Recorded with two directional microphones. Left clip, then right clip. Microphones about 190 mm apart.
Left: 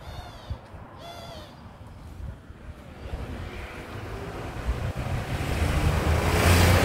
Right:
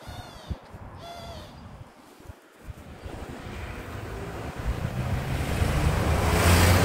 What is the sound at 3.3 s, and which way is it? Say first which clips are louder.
Vehicle: even; 45° right (ahead or behind).